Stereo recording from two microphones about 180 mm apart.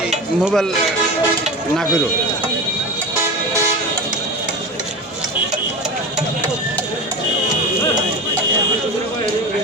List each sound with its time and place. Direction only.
0.4 s speech: centre (ahead or behind)